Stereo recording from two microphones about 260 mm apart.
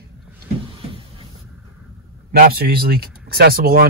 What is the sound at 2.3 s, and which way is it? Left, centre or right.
Speech, right.